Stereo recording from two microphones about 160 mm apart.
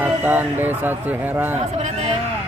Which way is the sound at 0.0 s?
10° right (ahead or behind).